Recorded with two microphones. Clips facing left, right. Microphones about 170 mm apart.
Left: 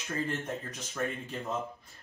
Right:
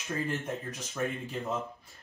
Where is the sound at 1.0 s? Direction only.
10° right (ahead or behind).